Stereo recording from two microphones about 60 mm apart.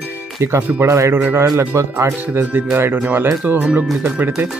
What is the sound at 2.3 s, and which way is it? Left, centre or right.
Speech, right.